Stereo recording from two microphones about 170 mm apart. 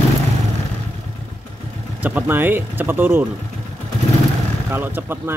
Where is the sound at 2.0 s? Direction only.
10° right (ahead or behind).